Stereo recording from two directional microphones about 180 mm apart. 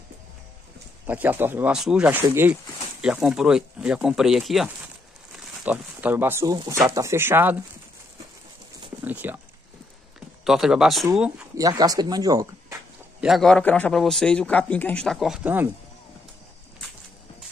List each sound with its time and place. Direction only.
1.0 s a man's voice: 10° right (ahead or behind)
9.0 s speech: 10° right (ahead or behind)
10.4 s a man's voice: 5° right (ahead or behind)
11.5 s speech: 20° right (ahead or behind)
13.2 s a man's voice: centre (ahead or behind)